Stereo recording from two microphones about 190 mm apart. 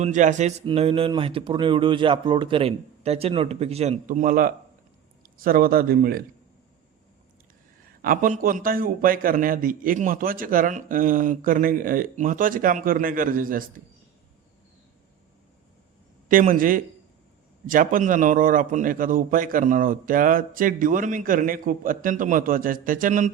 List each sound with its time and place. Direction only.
0.0 s speech: 40° right (ahead or behind)
0.6 s a man's voice: 30° right (ahead or behind); by 6.2 s 50° right (ahead or behind)
8.0 s a man's voice: 45° right (ahead or behind)
16.3 s a man's voice: 45° right (ahead or behind)